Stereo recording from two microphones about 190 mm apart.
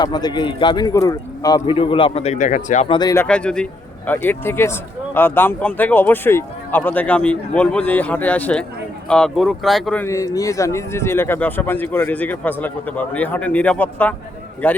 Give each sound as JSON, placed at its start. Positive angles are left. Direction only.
{"t": 0.0, "sound": "speech", "side_deg": 20}
{"t": 2.9, "sound": "speech", "side_deg": 20}
{"t": 3.2, "sound": "a man's voice", "side_deg": 5}